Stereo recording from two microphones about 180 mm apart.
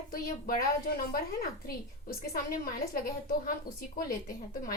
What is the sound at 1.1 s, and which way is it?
A woman's voice, 55° left (ahead or behind).